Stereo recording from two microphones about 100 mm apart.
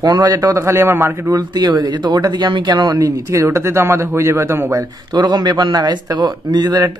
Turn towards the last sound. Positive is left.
turn(degrees=-40)  # may be behind; listen again after turning